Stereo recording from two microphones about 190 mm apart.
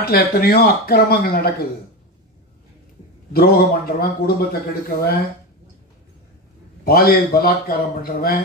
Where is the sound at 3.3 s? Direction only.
55° left (ahead or behind).